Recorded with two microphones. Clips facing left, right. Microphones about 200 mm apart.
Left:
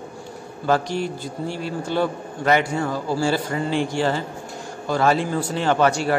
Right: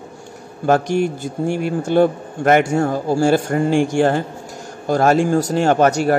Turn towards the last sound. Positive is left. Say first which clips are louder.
# right 4 dB
turn(degrees=-45)  # may be behind; listen again after turning